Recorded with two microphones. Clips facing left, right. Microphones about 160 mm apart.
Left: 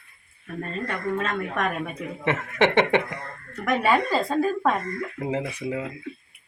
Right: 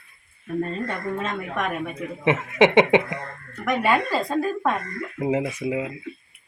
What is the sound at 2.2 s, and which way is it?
Speech, 15° right (ahead or behind).